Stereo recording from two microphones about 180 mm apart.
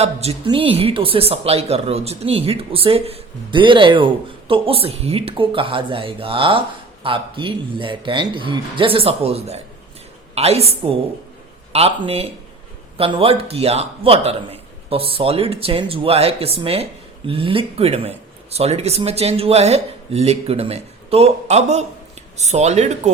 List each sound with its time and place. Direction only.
0.0 s a man's voice: 35° right (ahead or behind)